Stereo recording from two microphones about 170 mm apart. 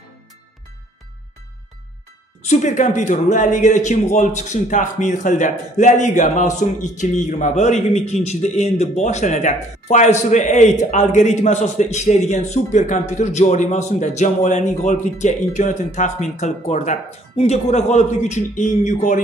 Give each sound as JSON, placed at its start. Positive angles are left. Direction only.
{"t": 2.4, "sound": "a man's voice", "side_deg": 45}